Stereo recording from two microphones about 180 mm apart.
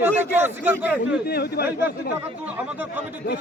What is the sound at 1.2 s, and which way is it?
Speech, 60° left (ahead or behind).